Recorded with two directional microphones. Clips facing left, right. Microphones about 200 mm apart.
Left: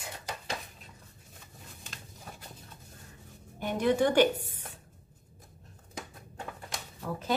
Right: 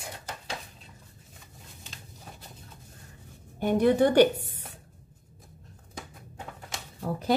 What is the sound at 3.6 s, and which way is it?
Speech, 55° right (ahead or behind).